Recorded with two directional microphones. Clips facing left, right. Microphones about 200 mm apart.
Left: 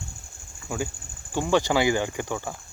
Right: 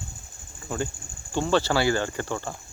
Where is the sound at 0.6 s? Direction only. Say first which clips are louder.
Even; 10° left (ahead or behind).